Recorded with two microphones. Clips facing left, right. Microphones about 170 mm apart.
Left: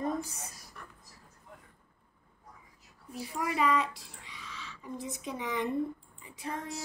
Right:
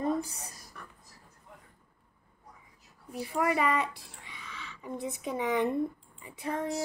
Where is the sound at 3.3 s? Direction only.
60° right (ahead or behind).